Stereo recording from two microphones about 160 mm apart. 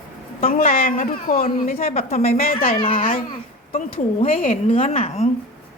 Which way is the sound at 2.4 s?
65° left (ahead or behind).